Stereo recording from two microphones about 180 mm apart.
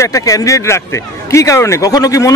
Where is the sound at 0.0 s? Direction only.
20° left (ahead or behind).